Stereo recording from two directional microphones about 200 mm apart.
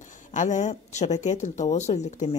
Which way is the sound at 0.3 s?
40° left (ahead or behind).